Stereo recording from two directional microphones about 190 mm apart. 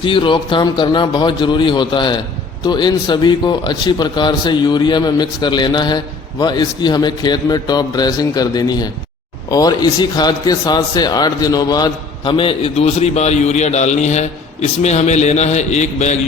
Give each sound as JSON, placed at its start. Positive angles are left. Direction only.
{"t": 0.0, "sound": "a man's voice", "side_deg": 25}